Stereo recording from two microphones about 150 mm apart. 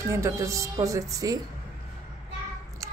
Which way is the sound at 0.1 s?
20° right (ahead or behind).